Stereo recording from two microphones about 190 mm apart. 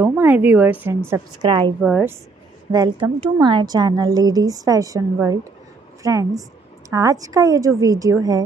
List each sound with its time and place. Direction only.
0.0 s a woman's voice: 10° right (ahead or behind)
1.8 s a woman's voice: 5° right (ahead or behind)
2.7 s a woman's voice: 25° right (ahead or behind)